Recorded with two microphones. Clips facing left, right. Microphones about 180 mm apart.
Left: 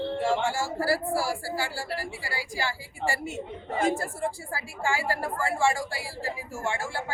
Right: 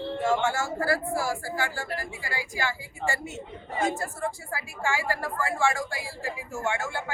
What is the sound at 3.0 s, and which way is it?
A woman's voice, 25° left (ahead or behind).